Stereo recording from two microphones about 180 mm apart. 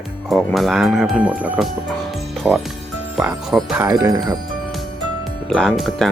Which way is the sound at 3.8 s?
20° right (ahead or behind).